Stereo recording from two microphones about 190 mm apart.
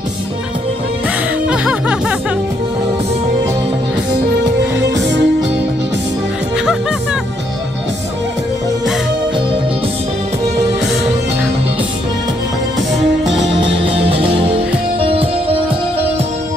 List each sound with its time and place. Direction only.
1.5 s music: 5° right (ahead or behind)
4.7 s music: 65° right (ahead or behind)
13.3 s music: 70° right (ahead or behind)
15.0 s music: 30° right (ahead or behind)